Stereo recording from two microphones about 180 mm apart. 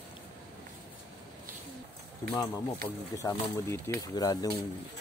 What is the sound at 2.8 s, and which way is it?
Speech, 15° left (ahead or behind).